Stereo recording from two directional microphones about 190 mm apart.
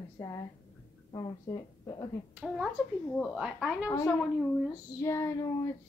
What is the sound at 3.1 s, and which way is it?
Speech, centre (ahead or behind).